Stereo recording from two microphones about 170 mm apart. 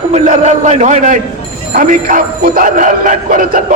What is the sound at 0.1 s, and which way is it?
Speech, 40° right (ahead or behind).